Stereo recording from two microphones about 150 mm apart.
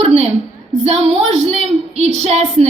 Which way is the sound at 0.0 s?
45° right (ahead or behind).